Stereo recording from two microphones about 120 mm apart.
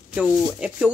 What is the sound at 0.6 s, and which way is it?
Speech, 10° right (ahead or behind).